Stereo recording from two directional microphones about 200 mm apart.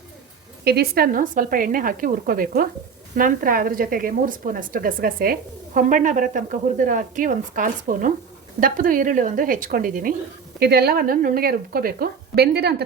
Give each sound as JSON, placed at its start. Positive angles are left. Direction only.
{"t": 0.6, "sound": "a woman's voice", "side_deg": -50}